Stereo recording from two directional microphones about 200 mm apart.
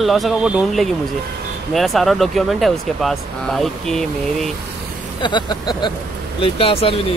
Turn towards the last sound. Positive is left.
turn(degrees=30)  # may be behind; listen again after turning